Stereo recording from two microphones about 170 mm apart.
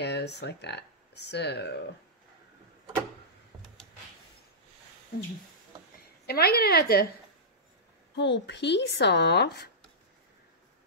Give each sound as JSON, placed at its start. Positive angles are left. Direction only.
{"t": 0.0, "sound": "speech", "side_deg": 80}
{"t": 6.2, "sound": "a woman's voice", "side_deg": 65}
{"t": 8.2, "sound": "speech", "side_deg": 90}